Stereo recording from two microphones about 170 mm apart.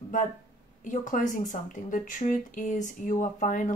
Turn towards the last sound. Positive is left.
turn(degrees=50)  # may be behind; listen again after turning